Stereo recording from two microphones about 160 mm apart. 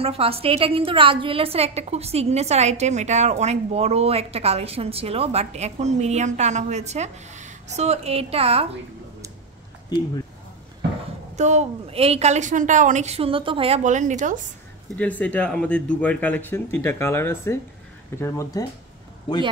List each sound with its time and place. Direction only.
0.0 s a woman's voice: 35° right (ahead or behind)
9.8 s speech: 25° left (ahead or behind)
11.3 s a woman's voice: 45° right (ahead or behind)
13.8 s a woman's voice: 50° right (ahead or behind)
14.9 s speech: 10° left (ahead or behind)